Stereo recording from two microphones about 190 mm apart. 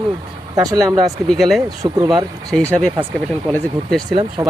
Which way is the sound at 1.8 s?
20° right (ahead or behind).